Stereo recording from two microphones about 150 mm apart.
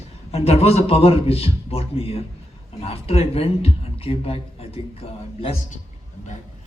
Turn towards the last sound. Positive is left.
turn(degrees=40)  # may be behind; listen again after turning